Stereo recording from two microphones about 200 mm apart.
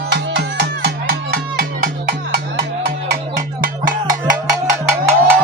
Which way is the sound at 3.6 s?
45° right (ahead or behind).